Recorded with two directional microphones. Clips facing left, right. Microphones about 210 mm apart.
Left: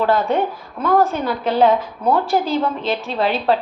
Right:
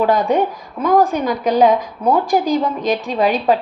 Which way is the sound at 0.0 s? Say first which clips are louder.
Right 2 dB; 15° right (ahead or behind).